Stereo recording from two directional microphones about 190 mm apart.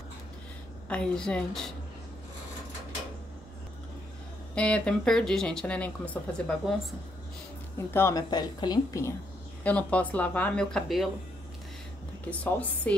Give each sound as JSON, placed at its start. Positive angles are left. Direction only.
{"t": 0.8, "sound": "speech", "side_deg": 5}
{"t": 4.6, "sound": "speech", "side_deg": 5}
{"t": 7.7, "sound": "speech", "side_deg": 15}
{"t": 9.6, "sound": "speech", "side_deg": 5}
{"t": 12.3, "sound": "speech", "side_deg": 10}